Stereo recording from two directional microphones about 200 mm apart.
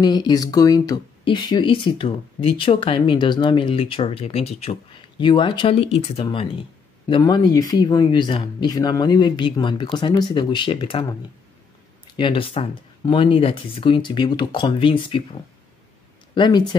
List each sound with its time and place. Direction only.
0.0 s speech: 20° left (ahead or behind)
12.2 s speech: 25° left (ahead or behind)